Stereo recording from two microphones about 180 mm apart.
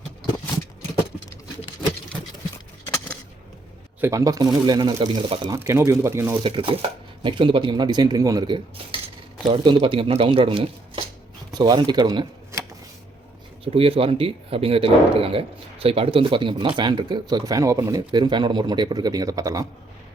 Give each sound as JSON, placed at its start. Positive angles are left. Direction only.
{"t": 4.0, "sound": "speech", "side_deg": -20}
{"t": 6.4, "sound": "speech", "side_deg": -30}
{"t": 13.7, "sound": "speech", "side_deg": -30}